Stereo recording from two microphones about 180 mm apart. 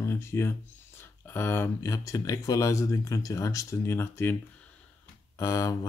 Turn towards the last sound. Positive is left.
turn(degrees=20)  # may be behind; listen again after turning